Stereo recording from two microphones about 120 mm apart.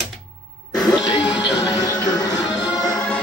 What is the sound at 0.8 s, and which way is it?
Music, 35° left (ahead or behind).